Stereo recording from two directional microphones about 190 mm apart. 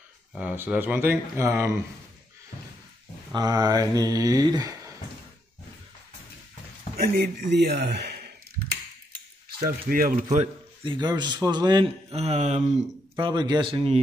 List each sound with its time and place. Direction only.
0.3 s speech: 5° right (ahead or behind)
3.3 s a man's voice: 20° right (ahead or behind)
7.0 s a man's voice: 50° right (ahead or behind)
9.6 s speech: 50° right (ahead or behind)
10.3 s a man's voice: 30° right (ahead or behind)
13.2 s a man's voice: 25° right (ahead or behind)